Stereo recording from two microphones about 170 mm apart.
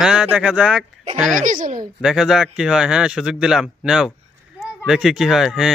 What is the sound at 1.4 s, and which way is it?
Speech, 50° right (ahead or behind).